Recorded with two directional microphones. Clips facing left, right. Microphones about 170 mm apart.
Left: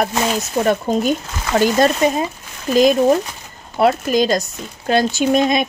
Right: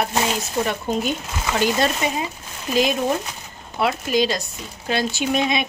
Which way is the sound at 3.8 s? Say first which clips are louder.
Left 5 dB; 45° left (ahead or behind).